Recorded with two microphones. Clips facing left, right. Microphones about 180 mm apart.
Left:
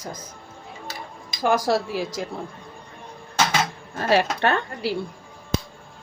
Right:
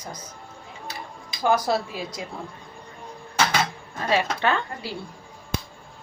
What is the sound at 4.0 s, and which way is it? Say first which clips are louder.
Speech: left 3 dB; 70° left (ahead or behind).